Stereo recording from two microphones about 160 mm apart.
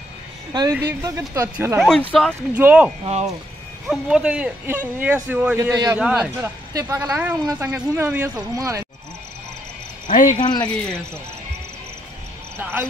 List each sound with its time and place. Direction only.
0.7 s a man's voice: 15° right (ahead or behind)
1.8 s speech: 5° left (ahead or behind)
2.5 s a man's voice: 10° right (ahead or behind)
3.9 s a man's voice: 5° right (ahead or behind)
6.7 s a man's voice: 20° right (ahead or behind)
10.0 s cricket: 55° left (ahead or behind)
10.3 s speech: 25° left (ahead or behind)
12.5 s basketball bounce: 15° right (ahead or behind)